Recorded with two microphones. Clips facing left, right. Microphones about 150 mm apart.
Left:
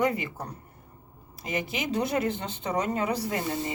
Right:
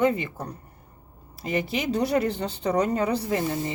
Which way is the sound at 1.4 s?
35° right (ahead or behind).